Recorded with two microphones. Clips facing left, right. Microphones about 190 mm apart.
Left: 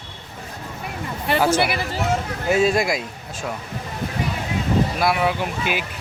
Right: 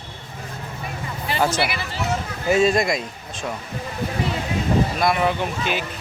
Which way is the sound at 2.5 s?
5° left (ahead or behind).